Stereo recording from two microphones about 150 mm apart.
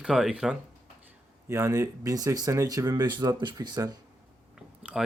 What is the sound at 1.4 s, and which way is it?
Speech, 20° right (ahead or behind).